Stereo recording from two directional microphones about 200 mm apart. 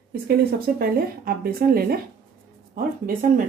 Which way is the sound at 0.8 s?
50° right (ahead or behind).